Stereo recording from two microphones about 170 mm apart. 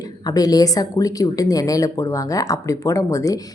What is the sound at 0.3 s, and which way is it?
Speech, 20° left (ahead or behind).